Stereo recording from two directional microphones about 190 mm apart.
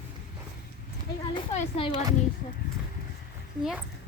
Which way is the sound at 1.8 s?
30° left (ahead or behind).